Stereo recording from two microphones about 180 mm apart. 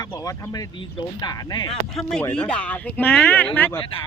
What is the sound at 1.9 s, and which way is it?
Speech, centre (ahead or behind).